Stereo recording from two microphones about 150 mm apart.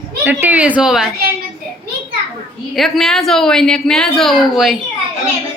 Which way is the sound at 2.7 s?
Centre (ahead or behind).